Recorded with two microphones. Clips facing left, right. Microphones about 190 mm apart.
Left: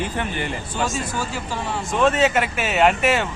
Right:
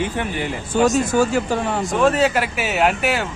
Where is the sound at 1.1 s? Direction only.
50° right (ahead or behind).